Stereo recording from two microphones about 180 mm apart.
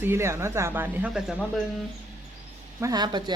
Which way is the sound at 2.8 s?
20° right (ahead or behind).